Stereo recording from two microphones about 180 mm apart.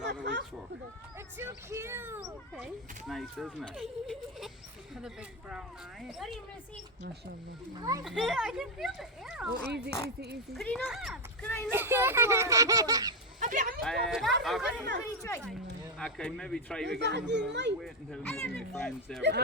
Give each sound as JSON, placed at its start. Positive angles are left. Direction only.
{"t": 0.0, "sound": "a sound", "side_deg": -75}
{"t": 1.4, "sound": "speech", "side_deg": -15}
{"t": 2.2, "sound": "speech", "side_deg": 0}
{"t": 7.8, "sound": "a child's voice", "side_deg": -20}
{"t": 8.0, "sound": "speech", "side_deg": 0}
{"t": 9.6, "sound": "speech", "side_deg": -65}
{"t": 10.5, "sound": "speech", "side_deg": 0}
{"t": 11.4, "sound": "speech", "side_deg": 15}
{"t": 11.7, "sound": "speech", "side_deg": -15}
{"t": 13.4, "sound": "a sound", "side_deg": -45}
{"t": 13.8, "sound": "speech", "side_deg": 0}
{"t": 16.0, "sound": "speech", "side_deg": 5}
{"t": 16.9, "sound": "speech", "side_deg": -70}
{"t": 17.7, "sound": "speech", "side_deg": 0}